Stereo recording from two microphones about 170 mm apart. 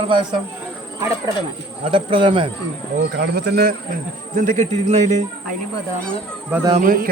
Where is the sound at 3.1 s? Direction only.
75° right (ahead or behind); by 5.2 s 40° right (ahead or behind).